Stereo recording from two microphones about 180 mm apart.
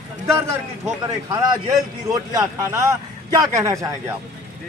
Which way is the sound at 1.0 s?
20° right (ahead or behind).